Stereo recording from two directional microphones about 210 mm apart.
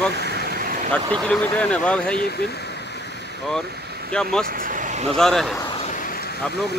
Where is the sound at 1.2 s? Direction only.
5° left (ahead or behind).